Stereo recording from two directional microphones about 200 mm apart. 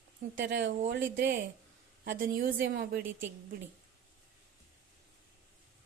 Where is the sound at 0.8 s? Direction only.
50° right (ahead or behind).